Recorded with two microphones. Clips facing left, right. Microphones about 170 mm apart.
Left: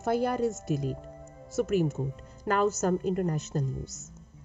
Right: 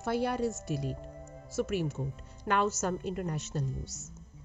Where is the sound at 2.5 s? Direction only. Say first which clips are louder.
Left 2 dB; centre (ahead or behind).